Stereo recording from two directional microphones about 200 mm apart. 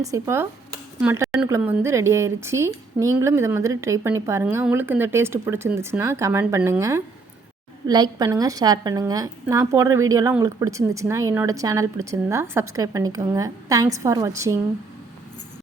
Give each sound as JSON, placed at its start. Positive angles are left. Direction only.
{"t": 0.0, "sound": "a woman's voice", "side_deg": -15}